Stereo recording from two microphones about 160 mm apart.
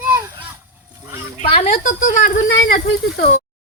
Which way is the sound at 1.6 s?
50° left (ahead or behind).